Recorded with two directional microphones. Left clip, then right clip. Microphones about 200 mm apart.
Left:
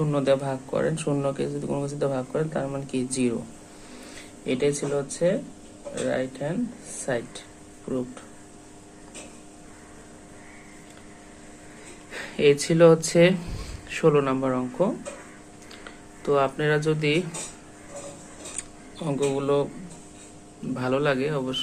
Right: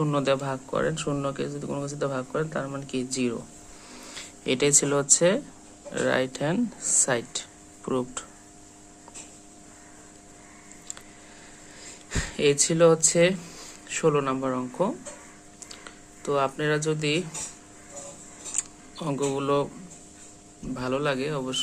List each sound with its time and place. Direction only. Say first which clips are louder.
0.0 s speech: left 2 dB; 20° right (ahead or behind)
4.4 s speech: right 2 dB; 30° right (ahead or behind)
12.1 s speech: left 3 dB; 25° right (ahead or behind)
18.5 s a sound: right 4 dB; 20° right (ahead or behind)
20.7 s speech: left 3 dB; 15° right (ahead or behind)